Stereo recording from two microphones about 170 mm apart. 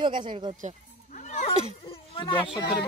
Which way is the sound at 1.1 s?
45° left (ahead or behind).